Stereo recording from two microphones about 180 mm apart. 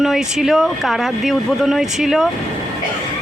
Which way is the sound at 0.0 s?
Centre (ahead or behind).